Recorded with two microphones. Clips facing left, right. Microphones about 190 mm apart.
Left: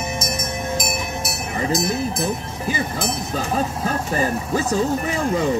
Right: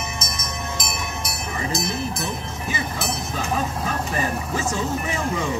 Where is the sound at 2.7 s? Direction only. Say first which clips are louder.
Left 4 dB; 35° left (ahead or behind).